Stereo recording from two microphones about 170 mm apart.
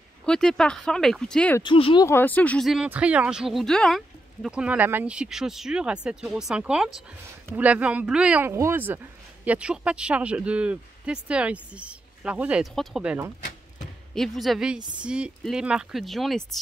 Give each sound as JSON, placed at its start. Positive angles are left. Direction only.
{"t": 0.2, "sound": "speech", "side_deg": 5}
{"t": 1.6, "sound": "speech", "side_deg": 30}
{"t": 2.0, "sound": "speech", "side_deg": 10}